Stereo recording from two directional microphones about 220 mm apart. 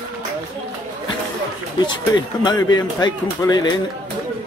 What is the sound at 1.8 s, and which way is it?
Speech, 20° left (ahead or behind).